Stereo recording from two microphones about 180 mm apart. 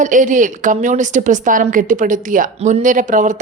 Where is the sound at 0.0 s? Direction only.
45° right (ahead or behind).